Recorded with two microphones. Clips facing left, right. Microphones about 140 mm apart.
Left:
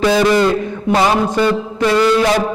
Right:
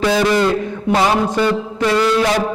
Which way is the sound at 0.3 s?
20° left (ahead or behind).